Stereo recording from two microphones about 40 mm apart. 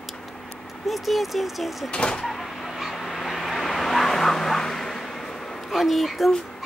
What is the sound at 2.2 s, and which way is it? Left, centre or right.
Vehicle, centre.